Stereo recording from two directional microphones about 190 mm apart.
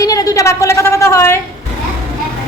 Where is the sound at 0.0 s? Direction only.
20° left (ahead or behind).